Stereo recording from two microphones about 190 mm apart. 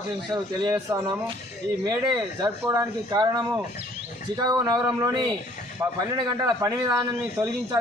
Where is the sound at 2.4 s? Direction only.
20° right (ahead or behind).